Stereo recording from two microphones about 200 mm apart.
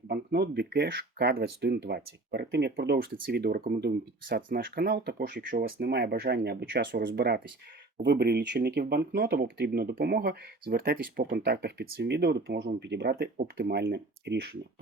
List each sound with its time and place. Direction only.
0.1 s speech: 55° right (ahead or behind)